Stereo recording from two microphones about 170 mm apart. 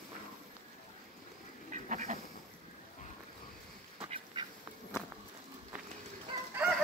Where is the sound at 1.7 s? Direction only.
45° right (ahead or behind).